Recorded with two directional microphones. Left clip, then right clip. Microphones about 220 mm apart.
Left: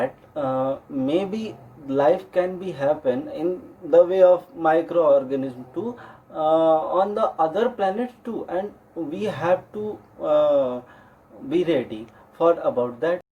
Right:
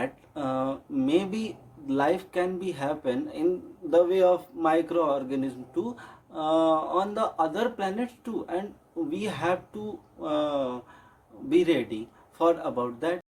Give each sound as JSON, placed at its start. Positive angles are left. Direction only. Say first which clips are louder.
{"t": 0.0, "sound": "a man's voice", "louder": "left 7 dB", "side_deg": -25}